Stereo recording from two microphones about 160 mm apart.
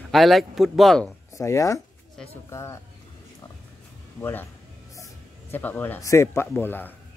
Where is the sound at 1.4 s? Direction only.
20° left (ahead or behind).